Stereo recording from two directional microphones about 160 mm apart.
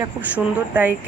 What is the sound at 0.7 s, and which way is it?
Speech, 10° right (ahead or behind).